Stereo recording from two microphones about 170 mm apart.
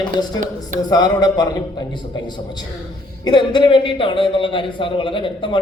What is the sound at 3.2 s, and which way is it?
Speech, 25° left (ahead or behind).